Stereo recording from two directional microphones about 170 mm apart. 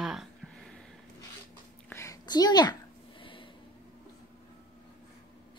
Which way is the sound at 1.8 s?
15° left (ahead or behind).